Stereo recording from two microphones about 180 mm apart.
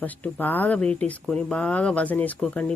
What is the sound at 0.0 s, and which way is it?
Speech, 10° left (ahead or behind).